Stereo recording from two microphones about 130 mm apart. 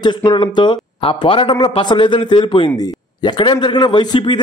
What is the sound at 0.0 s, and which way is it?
A man's voice, 35° left (ahead or behind).